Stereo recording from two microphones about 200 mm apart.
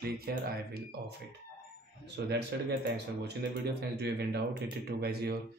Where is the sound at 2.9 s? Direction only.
55° right (ahead or behind).